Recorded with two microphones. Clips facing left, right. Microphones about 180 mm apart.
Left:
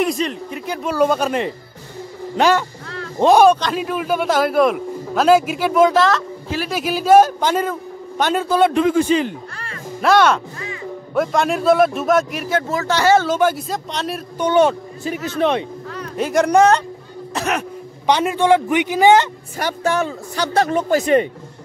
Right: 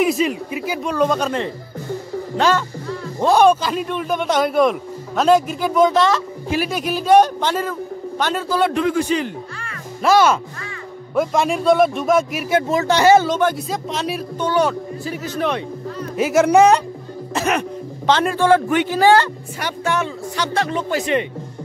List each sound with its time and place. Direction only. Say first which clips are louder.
0.0 s a man's voice: right 2 dB; 5° right (ahead or behind)
0.8 s a man's voice: left 2 dB; 5° left (ahead or behind)
3.4 s a man's voice: left 1 dB; centre (ahead or behind); by 9.3 s 25° left (ahead or behind)
10.0 s a man's voice: even; 5° right (ahead or behind)
12.4 s speech: right 3 dB; 15° right (ahead or behind)
13.3 s a man's voice: left 1 dB; 5° left (ahead or behind)
14.4 s a man's voice: left 4 dB; 25° left (ahead or behind)
16.2 s a man's voice: right 1 dB; 5° right (ahead or behind)
17.3 s music: right 2 dB; centre (ahead or behind)
18.0 s a man's voice: even; 15° left (ahead or behind)
19.6 s speech: left 2 dB; 40° left (ahead or behind)